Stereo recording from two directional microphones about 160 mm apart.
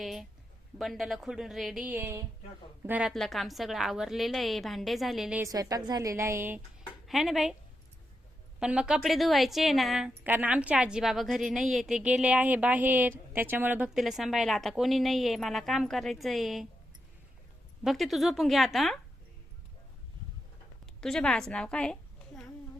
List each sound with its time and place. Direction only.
0.0 s a sound: centre (ahead or behind)
0.8 s a woman's voice: centre (ahead or behind)
3.1 s a woman's voice: centre (ahead or behind)
5.4 s a woman's voice: 20° right (ahead or behind)
7.1 s a woman's voice: centre (ahead or behind)
8.5 s a woman's voice: 5° right (ahead or behind)
17.8 s a woman's voice: centre (ahead or behind)
20.8 s a woman's voice: 5° left (ahead or behind)